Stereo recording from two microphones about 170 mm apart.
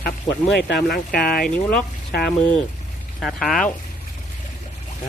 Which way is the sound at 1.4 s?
5° left (ahead or behind).